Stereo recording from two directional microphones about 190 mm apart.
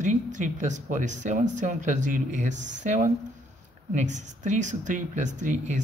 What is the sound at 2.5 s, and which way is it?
Speech, 70° right (ahead or behind).